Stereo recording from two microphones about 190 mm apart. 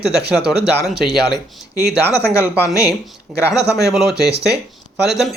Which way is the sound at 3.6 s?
60° right (ahead or behind).